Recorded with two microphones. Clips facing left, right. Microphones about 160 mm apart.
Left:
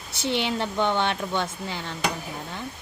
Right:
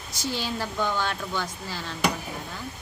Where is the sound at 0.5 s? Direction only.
25° left (ahead or behind).